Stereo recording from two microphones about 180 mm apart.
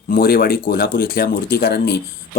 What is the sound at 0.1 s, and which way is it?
Speech, 55° left (ahead or behind).